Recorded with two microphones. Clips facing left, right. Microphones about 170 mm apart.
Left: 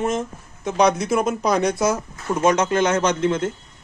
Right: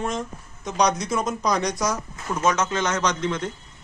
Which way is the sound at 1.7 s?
25° left (ahead or behind).